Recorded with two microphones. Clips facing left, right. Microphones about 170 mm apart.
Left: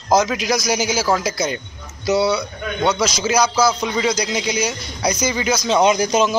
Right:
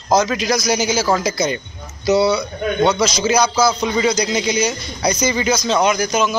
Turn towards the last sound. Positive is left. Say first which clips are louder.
# left 1 dB
turn(degrees=30)  # may be behind; listen again after turning